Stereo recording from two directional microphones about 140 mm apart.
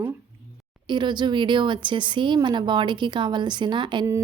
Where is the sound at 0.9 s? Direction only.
35° right (ahead or behind).